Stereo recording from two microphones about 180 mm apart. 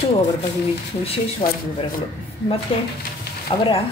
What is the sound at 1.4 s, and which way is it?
Speech, 30° left (ahead or behind).